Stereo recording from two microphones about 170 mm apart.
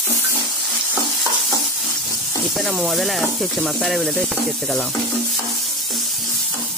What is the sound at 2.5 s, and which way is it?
Speech, centre (ahead or behind).